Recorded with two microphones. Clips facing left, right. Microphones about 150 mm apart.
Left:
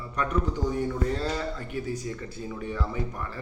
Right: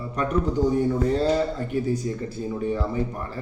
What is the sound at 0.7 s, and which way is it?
A man's voice, 30° right (ahead or behind).